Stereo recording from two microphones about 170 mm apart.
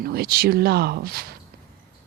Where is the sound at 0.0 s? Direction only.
65° right (ahead or behind).